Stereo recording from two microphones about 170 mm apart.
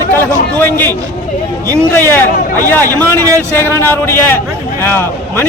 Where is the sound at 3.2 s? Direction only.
20° right (ahead or behind).